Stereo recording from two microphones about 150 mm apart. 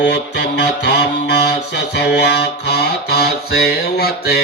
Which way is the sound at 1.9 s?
90° left.